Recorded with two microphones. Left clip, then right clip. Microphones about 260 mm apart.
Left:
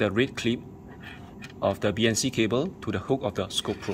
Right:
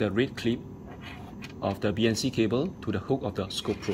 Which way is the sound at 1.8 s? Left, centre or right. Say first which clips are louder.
Left 2 dB; centre.